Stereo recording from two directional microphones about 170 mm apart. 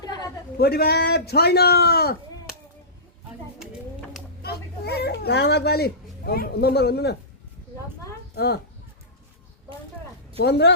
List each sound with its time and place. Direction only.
0.0 s a sound: 25° left (ahead or behind)
0.6 s a child's voice: 65° left (ahead or behind)
4.4 s a child's voice: 70° left (ahead or behind)
10.4 s speech: 85° left